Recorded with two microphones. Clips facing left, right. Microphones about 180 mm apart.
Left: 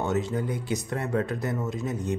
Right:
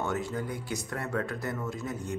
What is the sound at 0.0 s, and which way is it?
Speech, 20° left (ahead or behind).